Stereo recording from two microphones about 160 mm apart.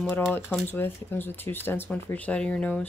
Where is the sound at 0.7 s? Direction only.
15° left (ahead or behind).